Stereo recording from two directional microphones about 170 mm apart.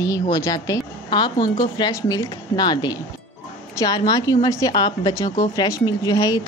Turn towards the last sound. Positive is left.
turn(degrees=25)  # may be behind; listen again after turning